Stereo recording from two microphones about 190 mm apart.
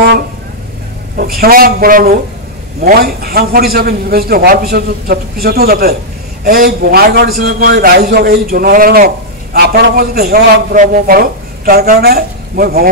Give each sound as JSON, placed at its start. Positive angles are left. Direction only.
{"t": 1.1, "sound": "a man's voice", "side_deg": -55}